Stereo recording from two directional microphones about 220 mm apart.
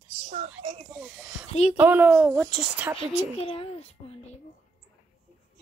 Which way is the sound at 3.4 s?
25° left (ahead or behind).